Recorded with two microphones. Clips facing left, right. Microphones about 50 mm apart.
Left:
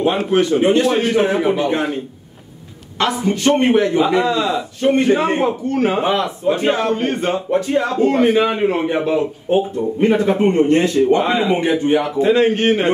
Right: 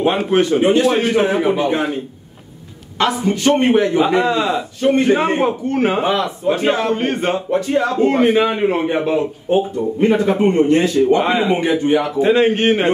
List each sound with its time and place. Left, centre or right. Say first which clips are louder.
0.6 s a man's voice: right 1 dB; centre
3.0 s a man's voice: right 1 dB; centre
4.0 s a man's voice: right 1 dB; right
6.0 s a man's voice: even; centre
6.9 s a man's voice: even; right
7.5 s a man's voice: even; centre
8.0 s a man's voice: even; right
8.4 s a man's voice: even; centre
9.8 s a man's voice: even; centre
11.1 s a man's voice: right 1 dB; centre
11.5 s a man's voice: even; centre
12.2 s a man's voice: right 1 dB; right